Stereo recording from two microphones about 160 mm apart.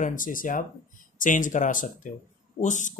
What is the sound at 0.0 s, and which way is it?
Speech, 55° left (ahead or behind).